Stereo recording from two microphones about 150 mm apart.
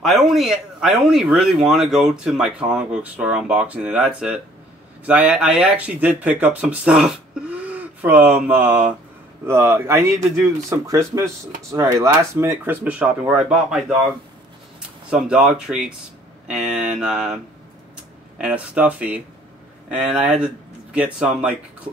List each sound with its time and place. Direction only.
0.0 s speech: centre (ahead or behind)
18.4 s speech: 10° right (ahead or behind)